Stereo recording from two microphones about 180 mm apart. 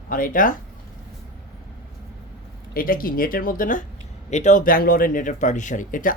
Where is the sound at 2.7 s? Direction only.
55° left (ahead or behind).